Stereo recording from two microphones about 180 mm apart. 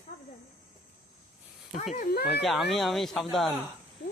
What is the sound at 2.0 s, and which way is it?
Speech, 60° left (ahead or behind).